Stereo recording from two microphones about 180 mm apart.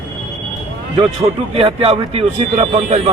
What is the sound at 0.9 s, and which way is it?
A man's voice, 30° right (ahead or behind).